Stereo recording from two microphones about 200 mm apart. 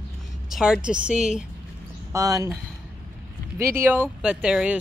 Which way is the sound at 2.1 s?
15° right (ahead or behind).